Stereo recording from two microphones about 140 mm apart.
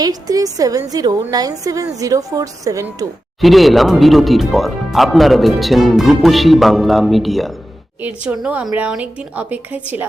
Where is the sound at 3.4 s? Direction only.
Centre (ahead or behind).